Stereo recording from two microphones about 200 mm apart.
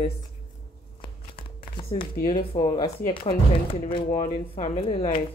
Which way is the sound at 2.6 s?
25° left (ahead or behind).